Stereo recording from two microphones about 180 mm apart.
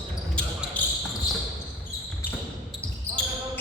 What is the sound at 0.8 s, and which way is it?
Basketball bounce, 10° left (ahead or behind).